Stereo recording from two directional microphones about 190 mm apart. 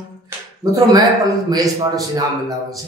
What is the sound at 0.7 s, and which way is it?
A man's voice, 20° right (ahead or behind).